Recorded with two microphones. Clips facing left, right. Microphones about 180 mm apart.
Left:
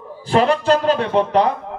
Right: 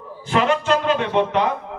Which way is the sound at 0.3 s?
35° left (ahead or behind).